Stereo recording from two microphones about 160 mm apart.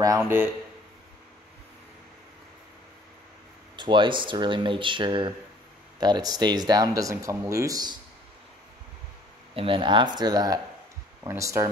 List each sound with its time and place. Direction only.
0.0 s a man's voice: 15° right (ahead or behind)
3.7 s speech: 30° right (ahead or behind)
9.6 s speech: 35° right (ahead or behind)